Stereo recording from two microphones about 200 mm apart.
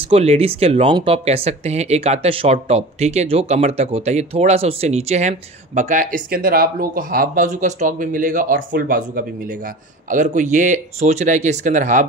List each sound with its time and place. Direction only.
0.1 s speech: 30° right (ahead or behind)